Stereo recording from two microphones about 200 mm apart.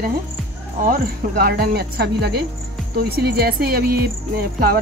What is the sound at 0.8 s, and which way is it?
Speech, 45° right (ahead or behind).